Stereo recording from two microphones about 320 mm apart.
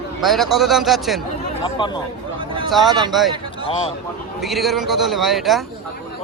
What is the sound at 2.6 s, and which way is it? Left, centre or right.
Speech, centre.